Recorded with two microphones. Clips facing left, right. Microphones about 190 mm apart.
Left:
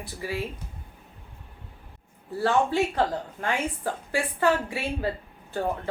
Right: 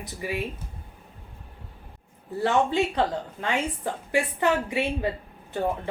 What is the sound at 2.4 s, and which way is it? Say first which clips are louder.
A woman's voice: even; 20° right (ahead or behind).